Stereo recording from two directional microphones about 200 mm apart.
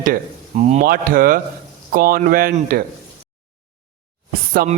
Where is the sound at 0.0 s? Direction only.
40° right (ahead or behind).